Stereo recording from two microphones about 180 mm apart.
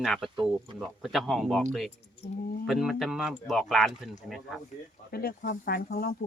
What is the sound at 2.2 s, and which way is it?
Speech, 35° left (ahead or behind).